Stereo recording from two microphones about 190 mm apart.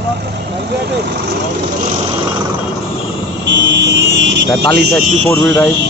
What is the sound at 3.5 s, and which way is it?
Vehicle, 70° right (ahead or behind).